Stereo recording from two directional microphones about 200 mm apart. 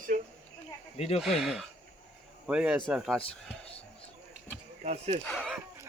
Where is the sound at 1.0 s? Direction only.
30° left (ahead or behind).